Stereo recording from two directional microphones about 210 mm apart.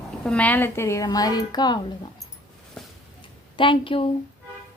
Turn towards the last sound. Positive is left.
turn(degrees=25)  # may be behind; listen again after turning